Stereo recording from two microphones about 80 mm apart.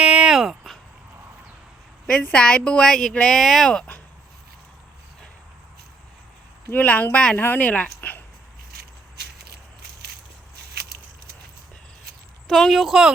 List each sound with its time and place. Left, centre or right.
0.0 s a sound: centre
2.0 s speech: centre
6.7 s speech: centre
12.5 s speech: centre